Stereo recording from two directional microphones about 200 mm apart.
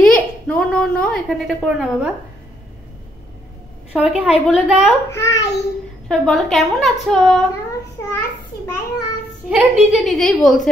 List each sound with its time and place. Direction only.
0.0 s a woman's voice: 5° left (ahead or behind)
3.9 s a woman's voice: 5° right (ahead or behind)
5.1 s a child's voice: 15° left (ahead or behind)
6.0 s a woman's voice: centre (ahead or behind)
8.0 s a child's voice: 15° left (ahead or behind)
9.5 s a woman's voice: 5° right (ahead or behind)